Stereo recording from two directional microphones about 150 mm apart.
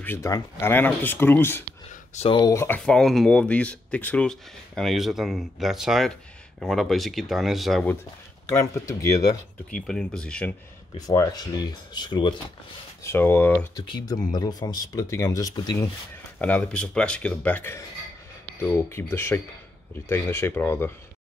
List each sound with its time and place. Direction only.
0.0 s speech: 15° left (ahead or behind)
1.9 s a sound: 50° left (ahead or behind)
2.3 s speech: 20° left (ahead or behind)
2.8 s speech: 5° left (ahead or behind)
8.5 s speech: 20° left (ahead or behind)
9.8 s speech: 5° left (ahead or behind)
11.0 s speech: 25° left (ahead or behind)
13.0 s speech: 15° left (ahead or behind)
13.7 s speech: 30° left (ahead or behind)
16.3 s speech: 10° left (ahead or behind)